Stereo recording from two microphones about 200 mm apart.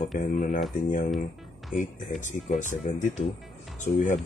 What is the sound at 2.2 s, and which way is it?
Speech, 40° left (ahead or behind).